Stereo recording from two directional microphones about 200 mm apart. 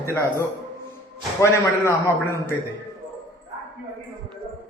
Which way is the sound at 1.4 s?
15° left (ahead or behind).